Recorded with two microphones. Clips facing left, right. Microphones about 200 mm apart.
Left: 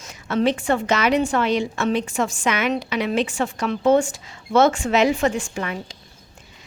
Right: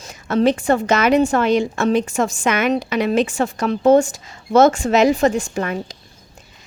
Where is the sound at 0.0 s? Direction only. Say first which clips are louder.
Right 4 dB; 35° right (ahead or behind).